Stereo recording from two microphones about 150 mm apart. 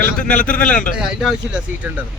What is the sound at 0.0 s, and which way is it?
Speech, 10° left (ahead or behind).